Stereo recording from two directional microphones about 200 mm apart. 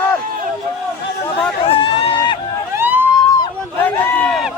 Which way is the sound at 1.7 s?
25° left (ahead or behind).